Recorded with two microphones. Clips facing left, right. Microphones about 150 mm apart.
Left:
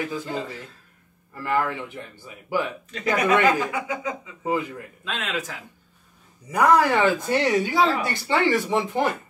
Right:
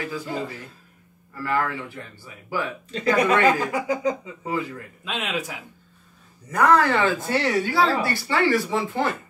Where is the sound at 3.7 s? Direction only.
35° right (ahead or behind).